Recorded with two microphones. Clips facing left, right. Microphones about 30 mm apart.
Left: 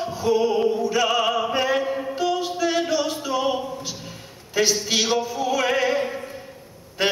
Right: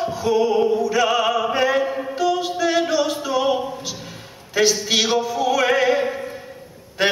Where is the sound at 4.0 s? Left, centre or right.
Centre.